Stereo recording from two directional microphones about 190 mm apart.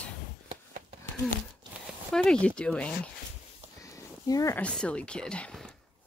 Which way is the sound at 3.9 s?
20° left (ahead or behind).